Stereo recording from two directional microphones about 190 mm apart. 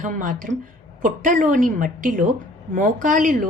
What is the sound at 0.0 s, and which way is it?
Speech, 45° right (ahead or behind).